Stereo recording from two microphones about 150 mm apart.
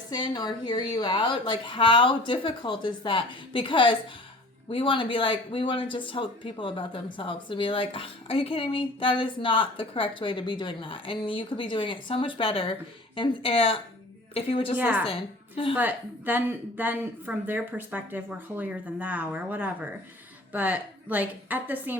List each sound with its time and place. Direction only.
0.1 s speech: 30° left (ahead or behind)
14.8 s a woman's voice: 10° right (ahead or behind)
15.0 s a woman's voice: 35° left (ahead or behind)
15.7 s a woman's voice: 10° right (ahead or behind)